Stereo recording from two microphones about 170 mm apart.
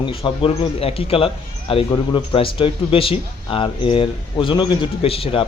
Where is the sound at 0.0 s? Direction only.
30° left (ahead or behind).